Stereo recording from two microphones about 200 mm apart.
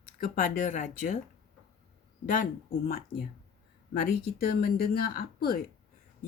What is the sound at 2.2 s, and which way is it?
Speech, 45° left (ahead or behind).